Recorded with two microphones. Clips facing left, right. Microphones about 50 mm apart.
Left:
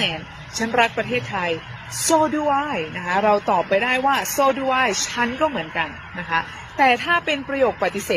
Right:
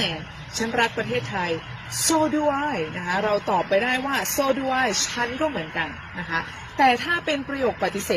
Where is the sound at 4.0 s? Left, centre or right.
Left.